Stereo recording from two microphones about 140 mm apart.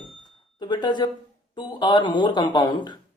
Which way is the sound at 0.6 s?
30° left (ahead or behind).